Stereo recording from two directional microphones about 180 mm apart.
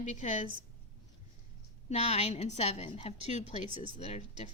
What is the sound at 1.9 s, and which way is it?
A woman's voice, 35° left (ahead or behind).